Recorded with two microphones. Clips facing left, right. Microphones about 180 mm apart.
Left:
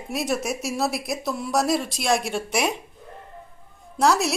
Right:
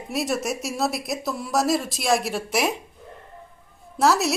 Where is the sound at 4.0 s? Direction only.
Centre (ahead or behind).